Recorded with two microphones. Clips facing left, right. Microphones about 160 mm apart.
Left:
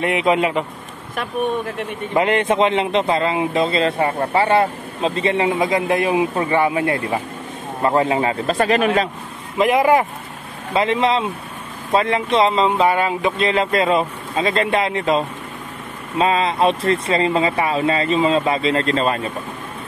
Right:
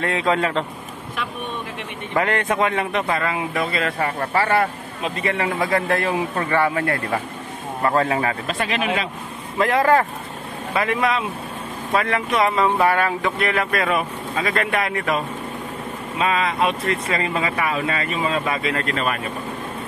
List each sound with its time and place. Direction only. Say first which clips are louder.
0.0 s speech: left 3 dB; 20° left (ahead or behind)
2.1 s a man's voice: left 4 dB; 20° left (ahead or behind)
8.5 s speech: left 6 dB; 40° left (ahead or behind)
9.6 s a man's voice: left 2 dB; 15° left (ahead or behind)